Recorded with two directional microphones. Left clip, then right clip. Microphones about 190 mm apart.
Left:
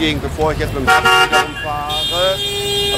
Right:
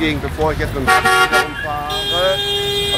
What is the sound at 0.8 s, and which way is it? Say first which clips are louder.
Speech: left 1 dB; 25° left (ahead or behind).